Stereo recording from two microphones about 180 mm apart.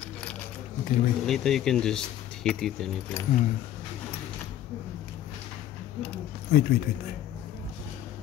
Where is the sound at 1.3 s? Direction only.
Centre (ahead or behind).